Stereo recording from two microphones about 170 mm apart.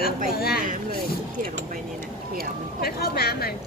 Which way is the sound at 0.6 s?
55° right (ahead or behind).